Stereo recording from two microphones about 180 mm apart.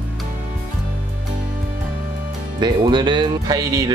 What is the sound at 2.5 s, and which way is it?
Speech, 25° right (ahead or behind).